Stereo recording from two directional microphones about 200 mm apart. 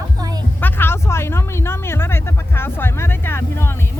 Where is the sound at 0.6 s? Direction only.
10° left (ahead or behind).